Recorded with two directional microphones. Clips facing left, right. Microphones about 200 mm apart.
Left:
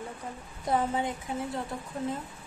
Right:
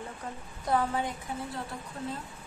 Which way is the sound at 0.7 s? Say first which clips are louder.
Left 1 dB; 20° left (ahead or behind).